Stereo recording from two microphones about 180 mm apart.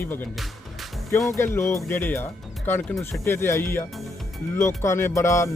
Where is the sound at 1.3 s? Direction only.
15° left (ahead or behind).